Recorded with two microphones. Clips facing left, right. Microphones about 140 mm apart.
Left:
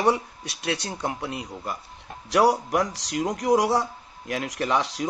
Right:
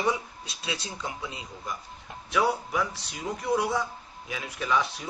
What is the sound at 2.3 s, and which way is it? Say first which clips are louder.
A man's voice: left 6 dB; 90° left.